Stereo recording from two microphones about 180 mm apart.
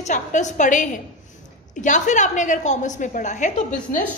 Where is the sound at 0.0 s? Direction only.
40° left (ahead or behind).